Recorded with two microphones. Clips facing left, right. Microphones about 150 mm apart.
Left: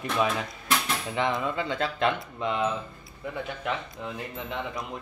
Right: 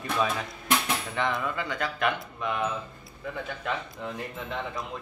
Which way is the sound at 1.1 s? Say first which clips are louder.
Left 3 dB; 20° left (ahead or behind).